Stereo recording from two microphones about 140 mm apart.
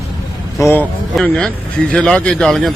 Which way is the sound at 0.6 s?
15° left (ahead or behind).